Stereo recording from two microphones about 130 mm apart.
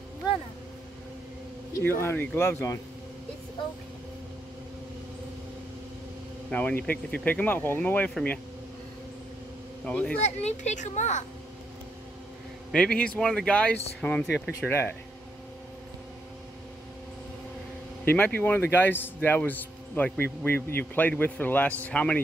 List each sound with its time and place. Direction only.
1.7 s speech: 20° left (ahead or behind)
6.5 s a man's voice: 10° left (ahead or behind)
9.8 s a man's voice: 10° left (ahead or behind)
10.2 s a child's voice: 60° left (ahead or behind)
12.7 s a man's voice: 10° left (ahead or behind)
18.0 s a man's voice: 15° left (ahead or behind)